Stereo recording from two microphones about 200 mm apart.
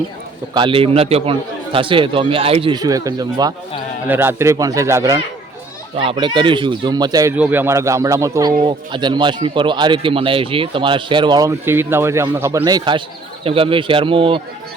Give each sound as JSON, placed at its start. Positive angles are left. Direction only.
{"t": 0.5, "sound": "speech", "side_deg": -25}